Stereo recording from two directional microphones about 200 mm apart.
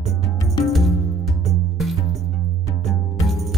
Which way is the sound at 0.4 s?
15° left (ahead or behind).